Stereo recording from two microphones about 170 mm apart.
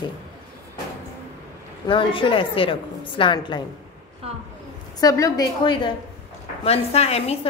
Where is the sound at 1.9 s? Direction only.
30° left (ahead or behind).